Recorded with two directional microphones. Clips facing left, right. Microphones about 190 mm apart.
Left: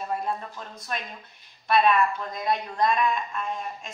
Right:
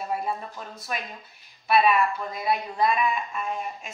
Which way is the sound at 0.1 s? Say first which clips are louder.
Even; 5° right (ahead or behind).